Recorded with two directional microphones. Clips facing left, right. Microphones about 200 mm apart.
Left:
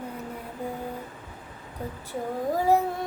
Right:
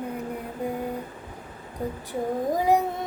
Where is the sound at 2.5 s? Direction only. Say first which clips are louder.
Even; 15° right (ahead or behind).